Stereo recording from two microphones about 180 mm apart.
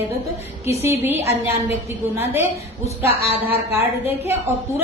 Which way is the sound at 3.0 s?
10° right (ahead or behind).